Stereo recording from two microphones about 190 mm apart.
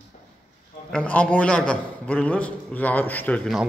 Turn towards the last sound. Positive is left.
turn(degrees=0)  # may be behind; listen again after turning